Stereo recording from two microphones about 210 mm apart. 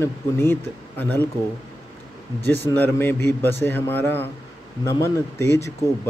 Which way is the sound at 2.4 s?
50° right (ahead or behind).